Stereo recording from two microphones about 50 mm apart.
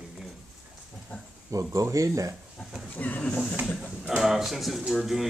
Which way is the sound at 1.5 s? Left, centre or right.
Right.